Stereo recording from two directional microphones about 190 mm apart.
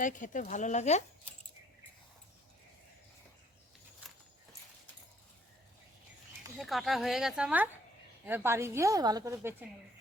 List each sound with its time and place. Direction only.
0.0 s speech: 40° left (ahead or behind)
6.6 s a woman's voice: centre (ahead or behind)